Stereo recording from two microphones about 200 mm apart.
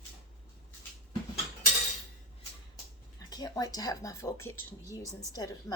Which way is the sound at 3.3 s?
20° left (ahead or behind).